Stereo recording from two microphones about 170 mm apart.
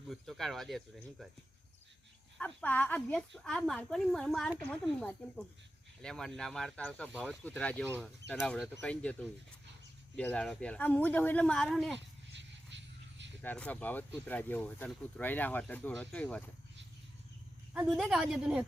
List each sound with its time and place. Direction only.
0.1 s speech: centre (ahead or behind)
2.4 s speech: 10° left (ahead or behind)
11.9 s a sound: 90° right
13.4 s speech: 10° left (ahead or behind)
17.7 s speech: 5° right (ahead or behind)